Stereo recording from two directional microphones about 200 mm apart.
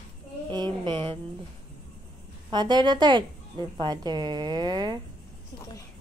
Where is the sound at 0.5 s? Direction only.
20° right (ahead or behind).